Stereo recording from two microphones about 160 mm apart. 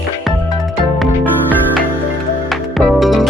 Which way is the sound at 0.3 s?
Centre (ahead or behind).